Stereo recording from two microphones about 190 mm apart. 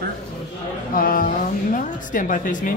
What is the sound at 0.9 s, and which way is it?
A woman's voice, 50° left (ahead or behind).